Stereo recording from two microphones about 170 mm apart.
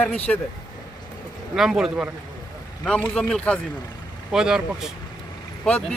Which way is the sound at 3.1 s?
5° left (ahead or behind).